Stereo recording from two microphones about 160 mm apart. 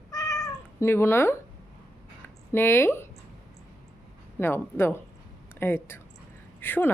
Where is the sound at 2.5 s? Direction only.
15° left (ahead or behind).